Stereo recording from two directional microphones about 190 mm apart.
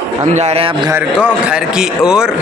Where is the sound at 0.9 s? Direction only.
10° right (ahead or behind).